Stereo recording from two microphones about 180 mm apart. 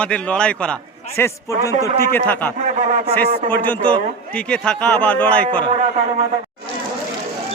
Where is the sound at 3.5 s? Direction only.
10° left (ahead or behind).